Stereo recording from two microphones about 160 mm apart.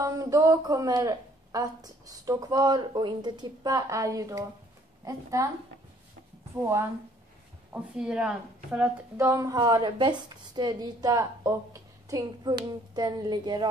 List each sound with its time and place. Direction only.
0.0 s speech: 20° right (ahead or behind)
6.6 s a woman's voice: 15° right (ahead or behind)
9.1 s speech: 20° right (ahead or behind)